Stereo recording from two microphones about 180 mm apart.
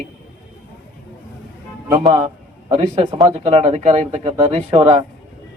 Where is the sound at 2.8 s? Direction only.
35° right (ahead or behind).